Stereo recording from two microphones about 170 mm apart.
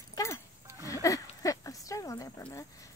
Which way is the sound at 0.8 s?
20° left (ahead or behind).